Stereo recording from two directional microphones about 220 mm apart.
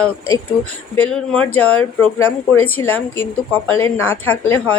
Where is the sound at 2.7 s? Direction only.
10° left (ahead or behind).